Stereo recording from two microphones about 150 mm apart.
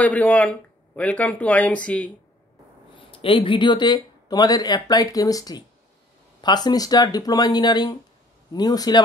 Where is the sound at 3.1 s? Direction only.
35° left (ahead or behind).